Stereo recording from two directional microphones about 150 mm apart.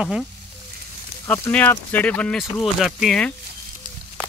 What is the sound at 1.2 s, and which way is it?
Speech, 15° left (ahead or behind).